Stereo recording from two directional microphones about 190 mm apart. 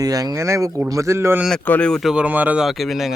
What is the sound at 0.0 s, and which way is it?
Speech, 20° right (ahead or behind).